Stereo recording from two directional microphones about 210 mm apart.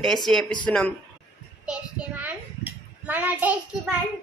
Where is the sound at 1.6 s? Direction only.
5° right (ahead or behind).